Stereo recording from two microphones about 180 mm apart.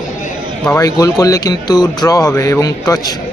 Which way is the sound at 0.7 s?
20° left (ahead or behind).